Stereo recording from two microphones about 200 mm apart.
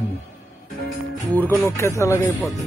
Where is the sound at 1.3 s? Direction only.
10° left (ahead or behind).